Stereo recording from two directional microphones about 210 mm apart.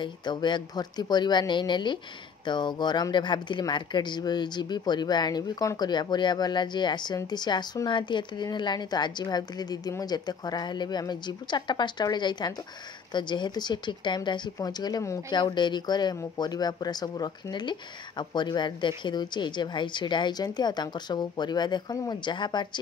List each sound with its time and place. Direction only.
0.0 s speech: 20° left (ahead or behind)